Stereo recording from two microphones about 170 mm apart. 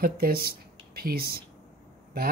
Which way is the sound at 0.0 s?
60° right (ahead or behind).